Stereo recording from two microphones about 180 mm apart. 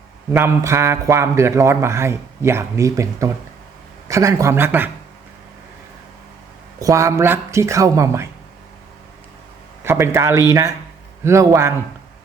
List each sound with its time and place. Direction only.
0.3 s a man's voice: 15° right (ahead or behind)
6.7 s a man's voice: 20° right (ahead or behind)
9.8 s a man's voice: 15° right (ahead or behind)